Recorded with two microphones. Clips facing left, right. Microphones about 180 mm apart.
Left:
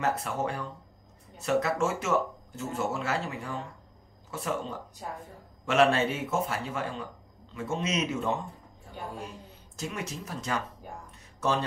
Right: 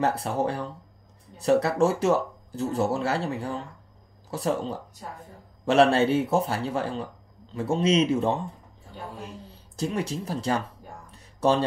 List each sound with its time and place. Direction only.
0.0 s speech: 35° right (ahead or behind)
9.8 s speech: 35° right (ahead or behind)
11.1 s a sound: 35° right (ahead or behind)